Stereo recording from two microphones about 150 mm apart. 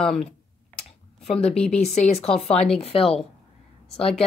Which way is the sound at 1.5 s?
5° left (ahead or behind).